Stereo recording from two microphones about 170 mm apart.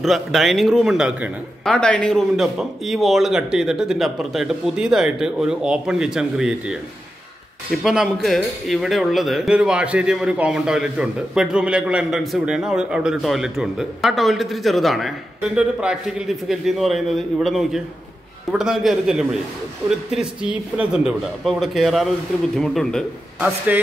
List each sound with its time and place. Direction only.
0.0 s speech: centre (ahead or behind)